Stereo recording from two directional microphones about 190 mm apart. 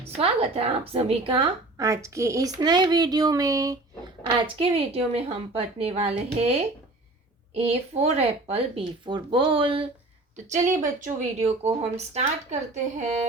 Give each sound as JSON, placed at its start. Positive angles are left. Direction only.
{"t": 0.2, "sound": "speech", "side_deg": -30}
{"t": 1.9, "sound": "speech", "side_deg": -15}
{"t": 10.3, "sound": "speech", "side_deg": -40}